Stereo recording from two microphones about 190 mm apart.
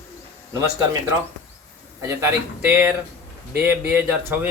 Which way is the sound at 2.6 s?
10° right (ahead or behind).